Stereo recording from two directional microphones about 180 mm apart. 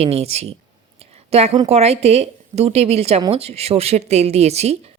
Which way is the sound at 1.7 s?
35° right (ahead or behind).